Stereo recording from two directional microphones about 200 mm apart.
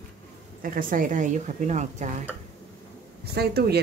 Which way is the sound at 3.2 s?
55° right (ahead or behind).